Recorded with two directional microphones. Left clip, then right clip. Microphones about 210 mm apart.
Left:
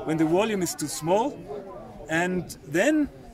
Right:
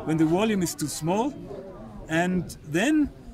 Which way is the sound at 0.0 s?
15° right (ahead or behind).